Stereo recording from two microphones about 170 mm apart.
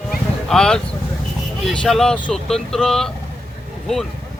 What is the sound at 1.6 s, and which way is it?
Speech, 5° left (ahead or behind).